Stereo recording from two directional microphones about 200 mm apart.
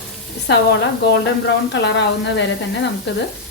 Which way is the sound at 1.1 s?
60° left (ahead or behind).